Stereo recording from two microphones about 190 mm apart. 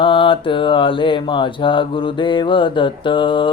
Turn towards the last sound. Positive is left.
turn(degrees=25)  # may be behind; listen again after turning